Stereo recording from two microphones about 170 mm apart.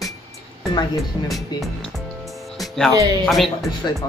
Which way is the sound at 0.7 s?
20° left (ahead or behind).